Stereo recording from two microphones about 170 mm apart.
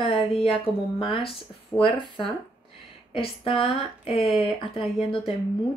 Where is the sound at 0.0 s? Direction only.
30° left (ahead or behind).